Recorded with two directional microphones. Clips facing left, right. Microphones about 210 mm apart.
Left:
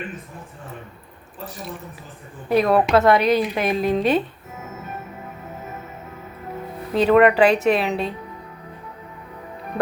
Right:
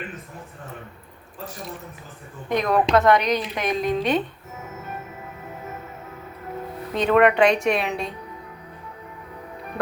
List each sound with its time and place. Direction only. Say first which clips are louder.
2.5 s a woman's voice: left 3 dB; 5° left (ahead or behind)
7.0 s a woman's voice: left 3 dB; 5° left (ahead or behind)